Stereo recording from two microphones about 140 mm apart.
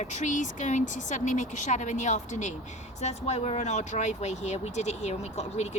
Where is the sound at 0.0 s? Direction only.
55° left (ahead or behind).